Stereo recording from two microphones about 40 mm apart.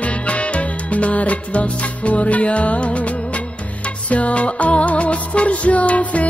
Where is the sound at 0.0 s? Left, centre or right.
Left.